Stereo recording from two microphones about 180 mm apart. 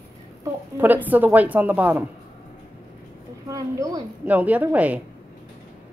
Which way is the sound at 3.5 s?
20° right (ahead or behind).